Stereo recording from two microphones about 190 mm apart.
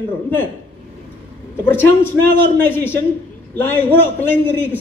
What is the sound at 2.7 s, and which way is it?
A man's voice, 10° left (ahead or behind).